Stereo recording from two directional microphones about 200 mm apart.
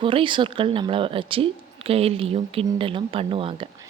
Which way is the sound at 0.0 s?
25° right (ahead or behind).